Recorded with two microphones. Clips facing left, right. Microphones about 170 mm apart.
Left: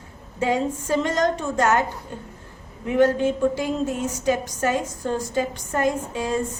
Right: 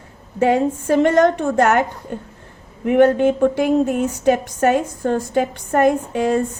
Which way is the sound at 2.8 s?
60° right (ahead or behind).